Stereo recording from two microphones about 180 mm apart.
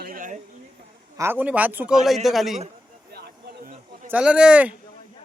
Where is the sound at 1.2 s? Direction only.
10° right (ahead or behind).